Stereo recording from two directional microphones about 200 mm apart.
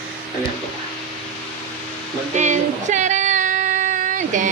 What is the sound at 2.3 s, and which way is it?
Female singing, 35° right (ahead or behind).